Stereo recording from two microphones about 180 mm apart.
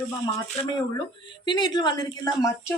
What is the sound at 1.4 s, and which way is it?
Speech, 25° left (ahead or behind).